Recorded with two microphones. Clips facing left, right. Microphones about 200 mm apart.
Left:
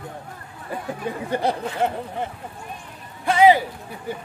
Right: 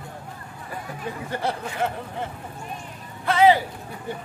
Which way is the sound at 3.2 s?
15° left (ahead or behind).